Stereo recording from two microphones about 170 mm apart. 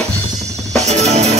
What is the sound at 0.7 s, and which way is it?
Music, 40° right (ahead or behind).